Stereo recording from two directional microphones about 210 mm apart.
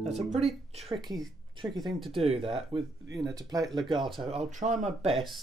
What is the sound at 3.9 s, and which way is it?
Speech, centre (ahead or behind).